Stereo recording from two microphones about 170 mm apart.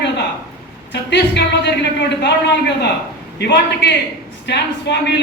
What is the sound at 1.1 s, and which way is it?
Speech, 85° left.